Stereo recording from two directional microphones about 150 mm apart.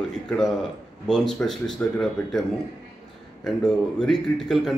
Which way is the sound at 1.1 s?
5° left (ahead or behind).